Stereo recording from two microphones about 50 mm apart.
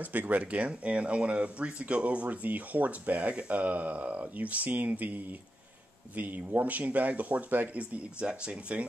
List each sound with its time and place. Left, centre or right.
0.0 s speech: right
7.9 s speech: right